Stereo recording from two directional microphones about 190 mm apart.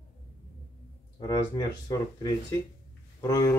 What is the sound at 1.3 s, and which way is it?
Speech, 20° left (ahead or behind).